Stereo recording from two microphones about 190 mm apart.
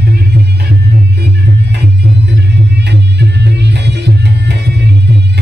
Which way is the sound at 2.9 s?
60° right (ahead or behind).